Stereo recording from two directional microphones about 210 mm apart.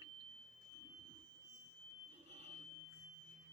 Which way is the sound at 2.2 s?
35° right (ahead or behind).